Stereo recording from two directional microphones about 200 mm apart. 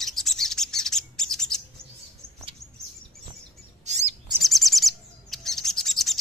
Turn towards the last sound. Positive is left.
turn(degrees=0)  # may be behind; listen again after turning